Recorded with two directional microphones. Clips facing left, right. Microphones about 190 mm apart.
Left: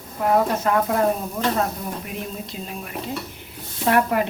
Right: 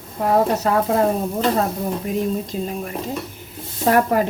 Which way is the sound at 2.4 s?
45° right (ahead or behind).